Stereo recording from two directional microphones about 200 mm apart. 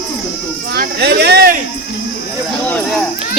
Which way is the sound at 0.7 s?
55° right (ahead or behind).